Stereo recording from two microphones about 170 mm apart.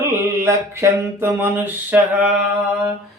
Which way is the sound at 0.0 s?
15° right (ahead or behind).